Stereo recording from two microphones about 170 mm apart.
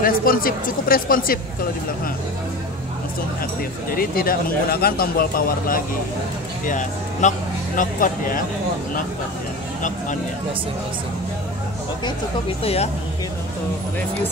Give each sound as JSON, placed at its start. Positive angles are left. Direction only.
{"t": 0.0, "sound": "speech", "side_deg": 55}
{"t": 3.9, "sound": "speech", "side_deg": 60}
{"t": 6.6, "sound": "speech", "side_deg": 50}
{"t": 12.6, "sound": "speech", "side_deg": 40}